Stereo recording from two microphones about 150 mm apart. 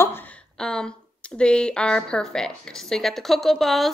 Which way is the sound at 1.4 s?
5° left (ahead or behind).